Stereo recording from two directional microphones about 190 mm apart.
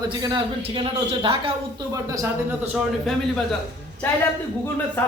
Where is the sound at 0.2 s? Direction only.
25° right (ahead or behind).